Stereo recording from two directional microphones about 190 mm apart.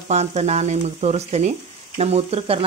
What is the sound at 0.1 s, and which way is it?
Speech, 35° right (ahead or behind).